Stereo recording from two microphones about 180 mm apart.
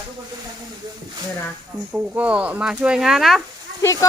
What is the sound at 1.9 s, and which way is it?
Speech, 5° right (ahead or behind).